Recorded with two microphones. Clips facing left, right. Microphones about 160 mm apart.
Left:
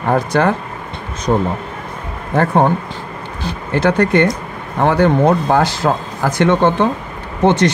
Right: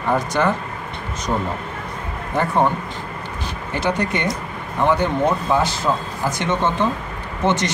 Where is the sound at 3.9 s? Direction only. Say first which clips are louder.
Left 8 dB; 75° left (ahead or behind); by 7.7 s 60° left (ahead or behind).